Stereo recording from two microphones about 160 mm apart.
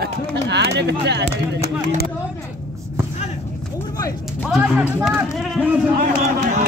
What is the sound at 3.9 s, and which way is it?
Speech, 20° left (ahead or behind).